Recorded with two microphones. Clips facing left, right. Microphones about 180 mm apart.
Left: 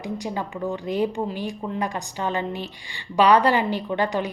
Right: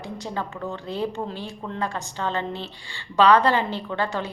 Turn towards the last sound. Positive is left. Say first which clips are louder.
# left 3 dB
turn(degrees=15)  # may be behind; listen again after turning